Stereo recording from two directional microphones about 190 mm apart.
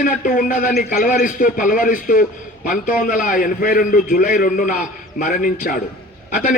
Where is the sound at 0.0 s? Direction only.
45° left (ahead or behind).